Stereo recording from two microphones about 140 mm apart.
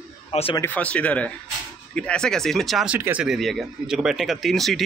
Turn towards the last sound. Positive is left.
turn(degrees=0)  # may be behind; listen again after turning